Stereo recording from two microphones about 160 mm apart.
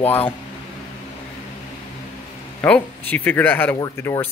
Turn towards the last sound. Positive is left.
turn(degrees=15)  # may be behind; listen again after turning